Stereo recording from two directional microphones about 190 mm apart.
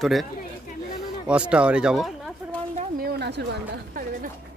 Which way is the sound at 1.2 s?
5° right (ahead or behind).